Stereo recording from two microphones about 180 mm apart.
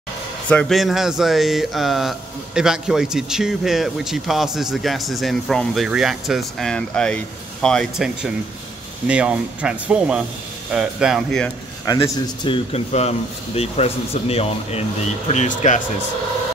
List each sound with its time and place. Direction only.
0.5 s speech: 5° left (ahead or behind)
11.8 s speech: 25° left (ahead or behind); by 15.8 s 45° left (ahead or behind)